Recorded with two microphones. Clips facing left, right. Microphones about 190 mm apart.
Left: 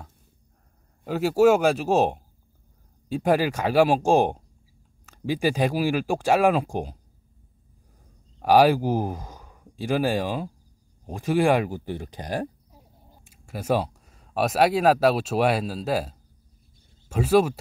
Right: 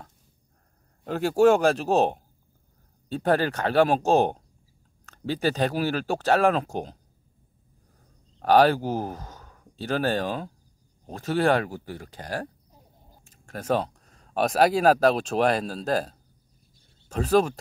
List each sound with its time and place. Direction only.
1.0 s a man's voice: 5° left (ahead or behind)
8.4 s speech: 10° left (ahead or behind)